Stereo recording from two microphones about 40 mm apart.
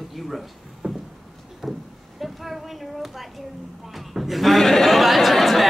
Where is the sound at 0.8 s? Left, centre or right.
Right.